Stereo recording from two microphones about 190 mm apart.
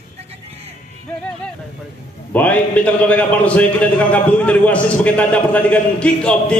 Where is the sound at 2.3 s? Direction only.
10° left (ahead or behind).